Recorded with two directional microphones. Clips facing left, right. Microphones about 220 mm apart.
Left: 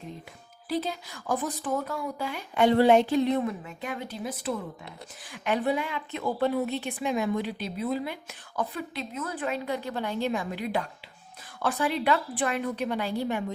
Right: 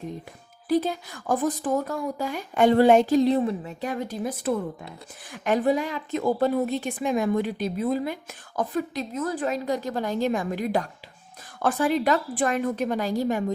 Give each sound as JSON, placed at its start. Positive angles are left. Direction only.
{"t": 0.7, "sound": "a woman's voice", "side_deg": -50}